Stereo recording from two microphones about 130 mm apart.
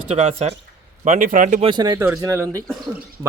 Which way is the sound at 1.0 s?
75° right (ahead or behind).